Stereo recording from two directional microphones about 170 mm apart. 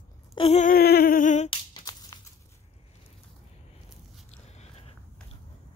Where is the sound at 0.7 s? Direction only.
60° left (ahead or behind).